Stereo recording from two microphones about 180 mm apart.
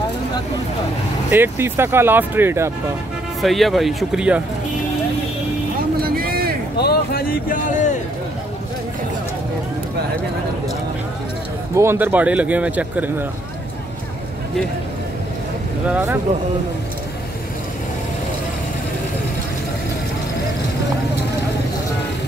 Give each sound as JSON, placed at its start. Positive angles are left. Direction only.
{"t": 1.3, "sound": "speech", "side_deg": -10}
{"t": 3.4, "sound": "speech", "side_deg": 0}
{"t": 6.1, "sound": "a sound", "side_deg": -55}
{"t": 6.8, "sound": "a sound", "side_deg": 60}
{"t": 11.7, "sound": "speech", "side_deg": -15}
{"t": 15.9, "sound": "speech", "side_deg": -10}